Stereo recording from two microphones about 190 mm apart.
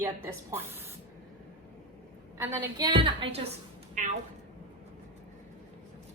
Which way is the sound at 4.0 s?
40° right (ahead or behind).